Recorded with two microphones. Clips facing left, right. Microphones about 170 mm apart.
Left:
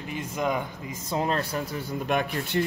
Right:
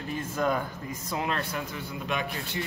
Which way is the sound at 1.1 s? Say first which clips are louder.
Left 4 dB; 35° left (ahead or behind).